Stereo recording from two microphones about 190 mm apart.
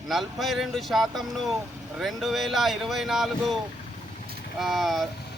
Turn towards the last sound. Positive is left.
turn(degrees=0)  # may be behind; listen again after turning